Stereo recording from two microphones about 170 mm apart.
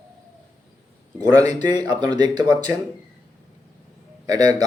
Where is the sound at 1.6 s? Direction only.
25° right (ahead or behind).